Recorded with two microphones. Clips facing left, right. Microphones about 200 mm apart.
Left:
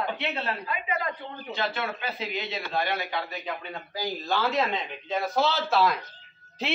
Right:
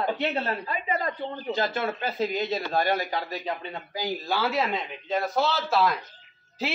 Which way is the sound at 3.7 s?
15° right (ahead or behind).